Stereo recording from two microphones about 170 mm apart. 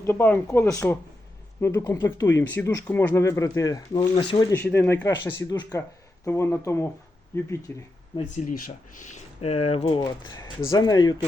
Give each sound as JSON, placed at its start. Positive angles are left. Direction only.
{"t": 0.0, "sound": "speech", "side_deg": 15}
{"t": 8.4, "sound": "speech", "side_deg": 50}